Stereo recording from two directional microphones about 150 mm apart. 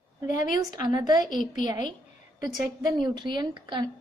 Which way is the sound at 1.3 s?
60° left (ahead or behind).